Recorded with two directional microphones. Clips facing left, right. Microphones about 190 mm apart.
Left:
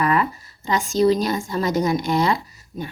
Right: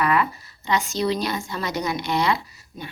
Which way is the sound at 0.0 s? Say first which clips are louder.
Left 1 dB; 40° left (ahead or behind).